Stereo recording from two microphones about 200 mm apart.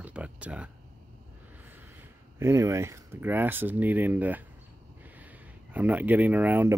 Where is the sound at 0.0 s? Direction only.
5° right (ahead or behind).